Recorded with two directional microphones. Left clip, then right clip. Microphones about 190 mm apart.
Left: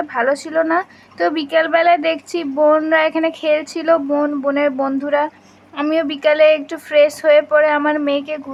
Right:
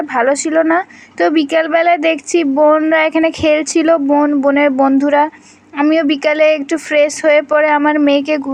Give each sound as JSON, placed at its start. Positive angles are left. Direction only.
{"t": 0.1, "sound": "a woman's voice", "side_deg": -20}